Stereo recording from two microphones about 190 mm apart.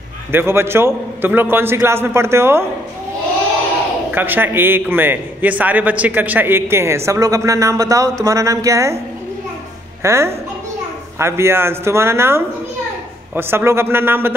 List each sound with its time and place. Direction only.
0.3 s a man's voice: 10° right (ahead or behind)
4.1 s a man's voice: 10° right (ahead or behind)
10.0 s a man's voice: 15° right (ahead or behind)